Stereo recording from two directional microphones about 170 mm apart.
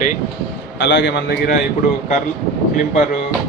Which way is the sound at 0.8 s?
90° left.